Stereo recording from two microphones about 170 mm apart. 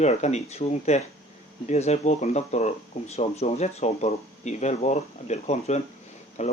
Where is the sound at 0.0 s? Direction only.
40° left (ahead or behind).